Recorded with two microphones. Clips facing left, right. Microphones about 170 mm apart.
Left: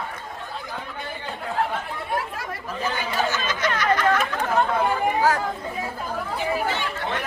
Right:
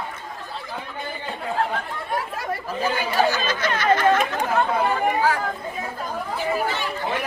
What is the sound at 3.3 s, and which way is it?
Chatter, 30° right (ahead or behind).